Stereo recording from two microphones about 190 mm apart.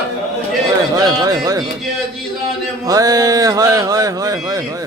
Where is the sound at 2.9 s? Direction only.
20° right (ahead or behind).